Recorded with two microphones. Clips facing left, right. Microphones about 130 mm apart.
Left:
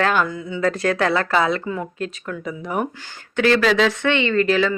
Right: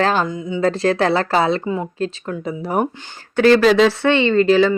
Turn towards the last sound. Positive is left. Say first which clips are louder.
# right 5 dB
turn(degrees=-30)  # may be behind; listen again after turning